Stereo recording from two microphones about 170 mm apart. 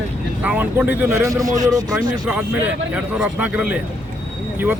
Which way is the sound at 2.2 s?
10° right (ahead or behind).